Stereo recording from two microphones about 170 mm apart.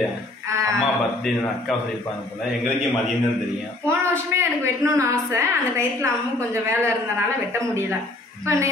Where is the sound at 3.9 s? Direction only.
15° right (ahead or behind).